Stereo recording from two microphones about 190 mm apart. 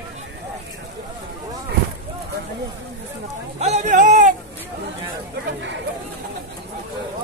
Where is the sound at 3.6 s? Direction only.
40° right (ahead or behind).